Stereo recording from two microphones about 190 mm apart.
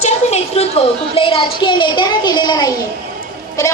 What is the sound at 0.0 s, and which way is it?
A woman's voice, 35° left (ahead or behind).